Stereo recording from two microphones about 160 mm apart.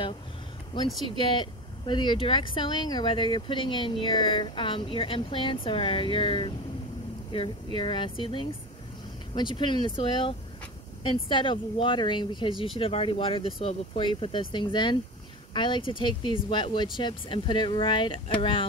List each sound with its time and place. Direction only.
1.0 s speech: 30° left (ahead or behind)